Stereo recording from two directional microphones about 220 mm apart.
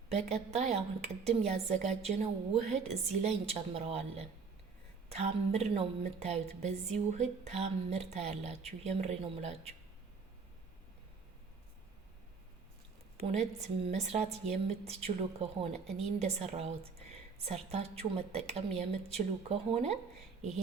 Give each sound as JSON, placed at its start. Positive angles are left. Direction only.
{"t": 0.1, "sound": "a woman's voice", "side_deg": -30}
{"t": 13.4, "sound": "a woman's voice", "side_deg": -30}